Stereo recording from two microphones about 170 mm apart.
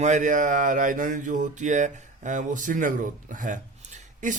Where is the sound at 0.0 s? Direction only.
45° right (ahead or behind).